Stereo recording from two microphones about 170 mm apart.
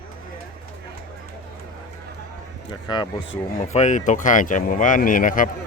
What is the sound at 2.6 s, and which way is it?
Speech, 25° left (ahead or behind).